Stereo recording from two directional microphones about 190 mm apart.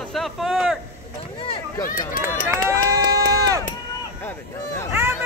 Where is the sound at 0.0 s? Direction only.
Centre (ahead or behind).